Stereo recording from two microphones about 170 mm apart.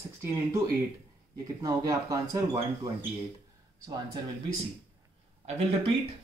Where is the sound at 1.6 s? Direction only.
20° right (ahead or behind).